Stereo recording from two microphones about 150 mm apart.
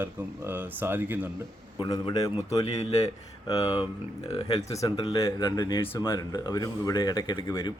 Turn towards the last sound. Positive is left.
turn(degrees=25)  # may be behind; listen again after turning